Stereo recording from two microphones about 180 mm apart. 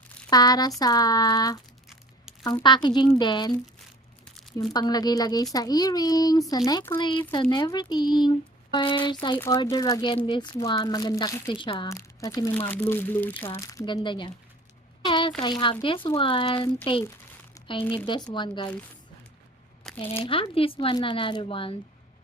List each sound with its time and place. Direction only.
0.3 s speech: 20° left (ahead or behind)
2.6 s speech: 25° left (ahead or behind)
4.7 s speech: 20° left (ahead or behind)
15.0 s a sound: 30° left (ahead or behind)
15.4 s speech: 25° left (ahead or behind)
17.5 s a sound: 30° left (ahead or behind)
17.9 s speech: 25° left (ahead or behind)
19.8 s a sound: 5° left (ahead or behind)
20.1 s speech: 30° left (ahead or behind)